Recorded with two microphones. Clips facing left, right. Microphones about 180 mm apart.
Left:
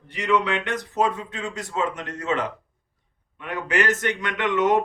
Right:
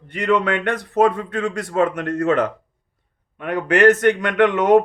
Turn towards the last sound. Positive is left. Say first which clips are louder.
# right 7 dB
turn(degrees=-55)  # may be behind; listen again after turning